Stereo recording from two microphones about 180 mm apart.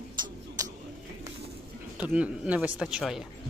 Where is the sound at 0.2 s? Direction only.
25° right (ahead or behind).